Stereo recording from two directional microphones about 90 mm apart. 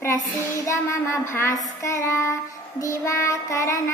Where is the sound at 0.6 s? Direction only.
35° left (ahead or behind).